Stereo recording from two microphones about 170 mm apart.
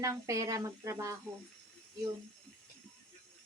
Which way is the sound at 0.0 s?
20° right (ahead or behind).